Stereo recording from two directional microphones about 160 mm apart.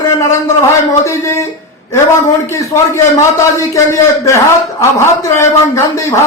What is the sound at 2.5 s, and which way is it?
Speech, 20° left (ahead or behind).